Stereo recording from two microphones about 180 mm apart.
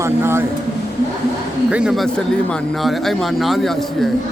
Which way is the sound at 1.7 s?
5° right (ahead or behind).